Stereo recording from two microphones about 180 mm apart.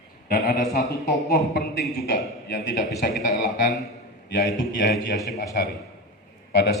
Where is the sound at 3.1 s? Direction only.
Centre (ahead or behind).